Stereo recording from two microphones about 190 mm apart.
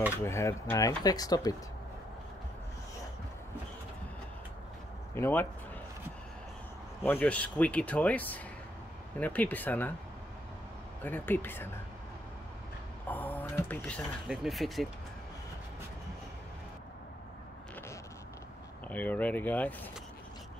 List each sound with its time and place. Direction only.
0.2 s speech: 15° left (ahead or behind)
5.1 s speech: 10° left (ahead or behind)
7.1 s speech: 10° left (ahead or behind)
11.0 s speech: 10° left (ahead or behind)
13.1 s a sound: 10° left (ahead or behind)
14.2 s speech: 5° right (ahead or behind)
18.9 s speech: 10° left (ahead or behind)